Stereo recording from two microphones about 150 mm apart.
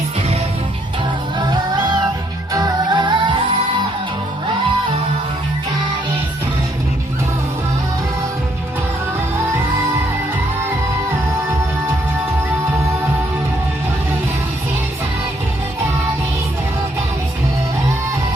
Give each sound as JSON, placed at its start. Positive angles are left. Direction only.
{"t": 1.4, "sound": "music", "side_deg": -30}